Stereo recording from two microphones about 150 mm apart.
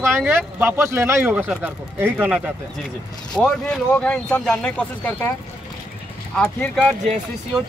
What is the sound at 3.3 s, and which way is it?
Speech, 5° left (ahead or behind).